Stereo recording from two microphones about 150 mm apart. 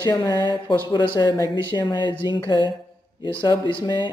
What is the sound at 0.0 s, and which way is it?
Speech, 30° left (ahead or behind).